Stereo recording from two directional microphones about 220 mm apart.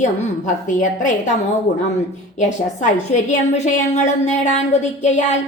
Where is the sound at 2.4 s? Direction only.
35° left (ahead or behind).